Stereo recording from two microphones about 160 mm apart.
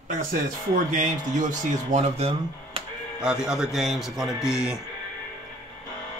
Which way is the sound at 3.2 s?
5° right (ahead or behind).